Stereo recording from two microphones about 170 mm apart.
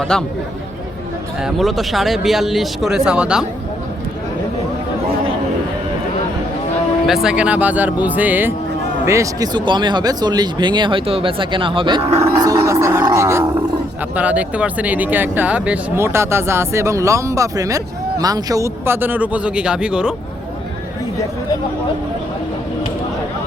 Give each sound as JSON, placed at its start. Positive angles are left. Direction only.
{"t": 0.0, "sound": "speech", "side_deg": 5}
{"t": 1.4, "sound": "speech", "side_deg": 0}
{"t": 7.1, "sound": "speech", "side_deg": -5}